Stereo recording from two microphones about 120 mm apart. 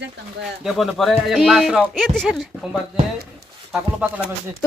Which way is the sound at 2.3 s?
5° right (ahead or behind).